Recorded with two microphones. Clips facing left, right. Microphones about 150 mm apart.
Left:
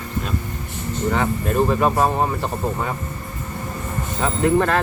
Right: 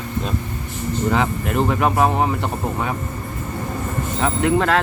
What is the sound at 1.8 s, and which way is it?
Speech, 10° right (ahead or behind).